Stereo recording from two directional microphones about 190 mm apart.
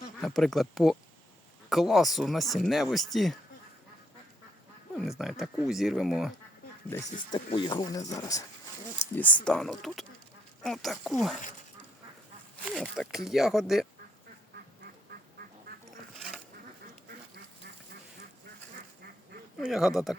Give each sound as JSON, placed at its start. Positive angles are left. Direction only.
{"t": 0.2, "sound": "speech", "side_deg": 0}
{"t": 4.9, "sound": "speech", "side_deg": 0}
{"t": 6.9, "sound": "speech", "side_deg": 15}
{"t": 7.3, "sound": "speech", "side_deg": 25}
{"t": 12.6, "sound": "speech", "side_deg": 0}
{"t": 16.1, "sound": "bee", "side_deg": 0}
{"t": 19.5, "sound": "speech", "side_deg": 0}